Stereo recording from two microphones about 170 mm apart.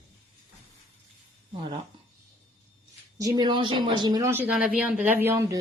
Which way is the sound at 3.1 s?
20° right (ahead or behind).